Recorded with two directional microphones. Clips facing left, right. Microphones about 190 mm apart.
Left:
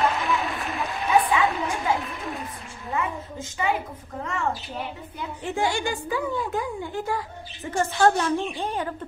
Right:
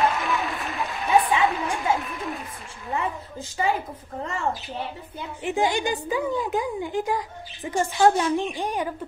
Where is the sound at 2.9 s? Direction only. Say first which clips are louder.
Even; 35° right (ahead or behind).